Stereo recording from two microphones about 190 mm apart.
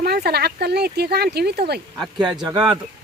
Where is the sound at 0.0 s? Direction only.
55° right (ahead or behind).